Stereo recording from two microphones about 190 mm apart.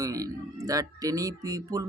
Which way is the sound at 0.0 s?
20° right (ahead or behind).